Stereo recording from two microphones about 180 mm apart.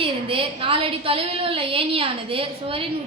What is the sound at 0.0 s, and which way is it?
A woman's voice, 30° right (ahead or behind).